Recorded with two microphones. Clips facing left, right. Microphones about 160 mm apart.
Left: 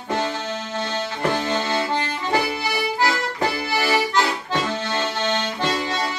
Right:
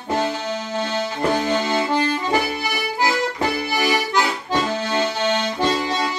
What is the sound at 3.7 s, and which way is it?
Accordion, 15° right (ahead or behind).